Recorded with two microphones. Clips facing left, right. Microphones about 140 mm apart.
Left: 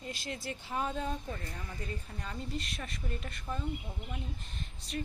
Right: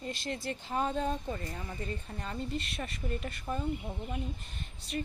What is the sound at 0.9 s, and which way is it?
Speech, 20° right (ahead or behind).